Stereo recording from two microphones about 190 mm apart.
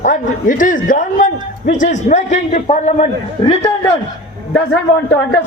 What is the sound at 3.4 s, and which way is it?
Speech, 20° left (ahead or behind).